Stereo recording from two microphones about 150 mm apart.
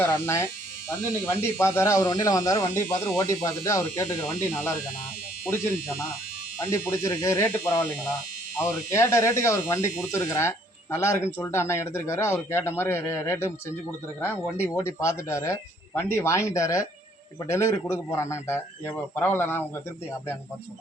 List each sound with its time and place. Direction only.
0.0 s speech: 15° left (ahead or behind)
6.6 s speech: 20° left (ahead or behind)
7.4 s a man's voice: 10° left (ahead or behind)